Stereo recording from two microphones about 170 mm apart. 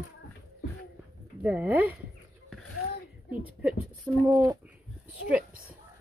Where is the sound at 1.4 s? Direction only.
10° right (ahead or behind).